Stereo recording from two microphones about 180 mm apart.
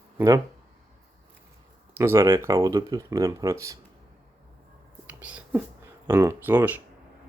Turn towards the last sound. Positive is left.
turn(degrees=-10)  # may be behind; listen again after turning